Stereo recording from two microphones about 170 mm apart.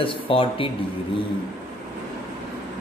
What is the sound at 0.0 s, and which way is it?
Speech, 30° left (ahead or behind).